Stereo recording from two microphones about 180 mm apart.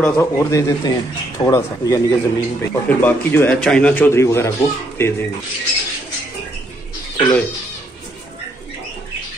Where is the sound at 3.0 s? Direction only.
10° left (ahead or behind).